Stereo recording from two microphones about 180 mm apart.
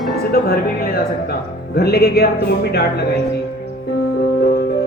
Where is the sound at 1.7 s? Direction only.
65° left (ahead or behind).